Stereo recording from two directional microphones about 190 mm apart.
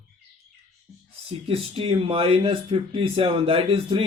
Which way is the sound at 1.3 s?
30° right (ahead or behind).